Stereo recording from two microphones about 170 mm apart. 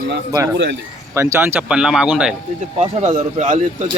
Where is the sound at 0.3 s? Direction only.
20° right (ahead or behind).